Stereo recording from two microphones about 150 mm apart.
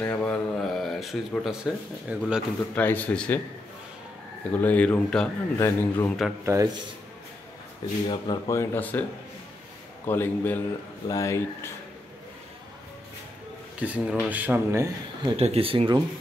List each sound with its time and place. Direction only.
0.0 s speech: 10° left (ahead or behind); by 2.4 s 5° right (ahead or behind)
2.7 s speech: 10° left (ahead or behind)
4.5 s speech: 10° left (ahead or behind)
6.4 s speech: 20° right (ahead or behind)
8.1 s speech: 25° left (ahead or behind)
10.0 s speech: 15° left (ahead or behind)
13.7 s speech: 10° right (ahead or behind)
15.2 s speech: 40° right (ahead or behind)